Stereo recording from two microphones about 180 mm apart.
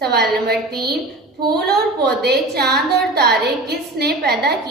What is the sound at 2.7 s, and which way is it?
A woman's voice, 60° right (ahead or behind).